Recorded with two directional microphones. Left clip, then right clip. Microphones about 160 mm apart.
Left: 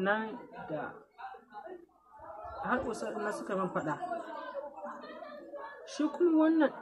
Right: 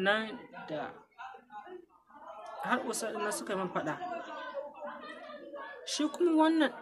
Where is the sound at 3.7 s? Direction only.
20° right (ahead or behind).